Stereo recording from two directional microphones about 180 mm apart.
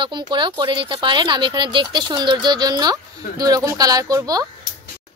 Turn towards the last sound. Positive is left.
turn(degrees=-20)  # may be behind; listen again after turning